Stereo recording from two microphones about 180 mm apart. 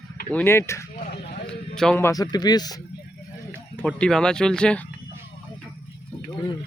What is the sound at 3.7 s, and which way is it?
Speech, 5° left (ahead or behind).